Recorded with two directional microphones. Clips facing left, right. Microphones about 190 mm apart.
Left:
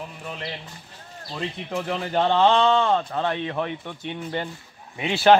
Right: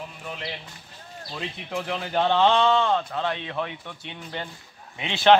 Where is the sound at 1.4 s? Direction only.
Centre (ahead or behind).